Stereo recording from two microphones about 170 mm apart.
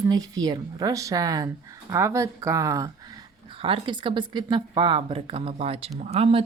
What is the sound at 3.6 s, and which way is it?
Speech, 30° right (ahead or behind).